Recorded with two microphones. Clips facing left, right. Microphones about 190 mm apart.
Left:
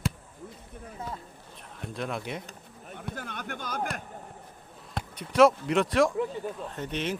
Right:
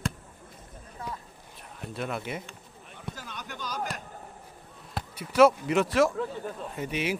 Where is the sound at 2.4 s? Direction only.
45° left (ahead or behind).